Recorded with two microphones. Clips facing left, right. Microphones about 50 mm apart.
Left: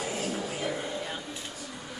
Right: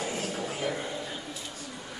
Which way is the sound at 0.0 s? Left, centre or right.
Centre.